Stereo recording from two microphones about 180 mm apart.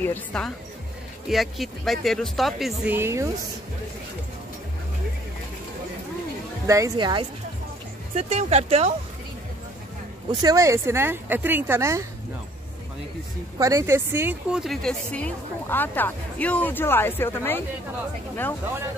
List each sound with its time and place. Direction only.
0.0 s speech: 10° left (ahead or behind); by 3.3 s 15° right (ahead or behind)
6.7 s speech: 20° right (ahead or behind)
8.2 s speech: 40° right (ahead or behind)
10.3 s speech: 20° right (ahead or behind)
13.6 s speech: 20° right (ahead or behind); by 17.6 s 10° left (ahead or behind)